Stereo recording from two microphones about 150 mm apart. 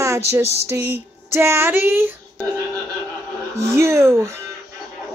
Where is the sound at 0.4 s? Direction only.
45° left (ahead or behind).